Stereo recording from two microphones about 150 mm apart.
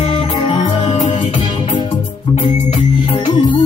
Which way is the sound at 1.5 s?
35° left (ahead or behind).